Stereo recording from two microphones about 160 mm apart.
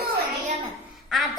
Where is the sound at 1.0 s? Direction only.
Centre (ahead or behind).